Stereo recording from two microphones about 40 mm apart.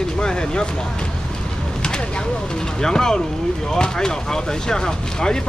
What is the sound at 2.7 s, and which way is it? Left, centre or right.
Speech, centre.